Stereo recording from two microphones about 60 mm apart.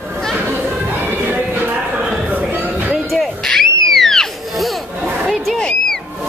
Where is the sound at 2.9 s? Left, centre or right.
Centre.